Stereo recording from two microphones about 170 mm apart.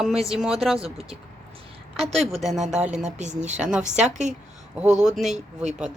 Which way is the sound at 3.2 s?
45° right (ahead or behind).